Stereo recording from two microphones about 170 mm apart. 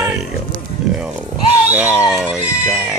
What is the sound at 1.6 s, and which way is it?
Speech, 10° right (ahead or behind).